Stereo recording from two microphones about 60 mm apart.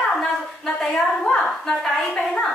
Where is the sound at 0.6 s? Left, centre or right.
Centre.